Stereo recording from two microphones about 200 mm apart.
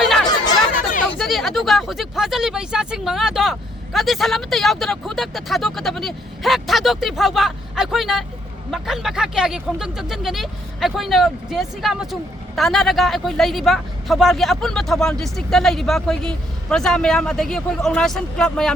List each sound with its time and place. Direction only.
0.3 s chatter: 20° left (ahead or behind)
1.2 s speech: centre (ahead or behind)